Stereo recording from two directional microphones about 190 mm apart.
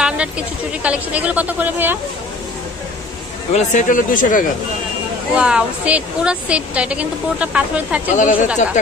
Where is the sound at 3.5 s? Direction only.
45° left (ahead or behind).